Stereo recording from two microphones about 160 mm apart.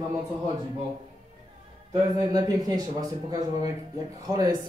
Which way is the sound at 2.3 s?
25° right (ahead or behind).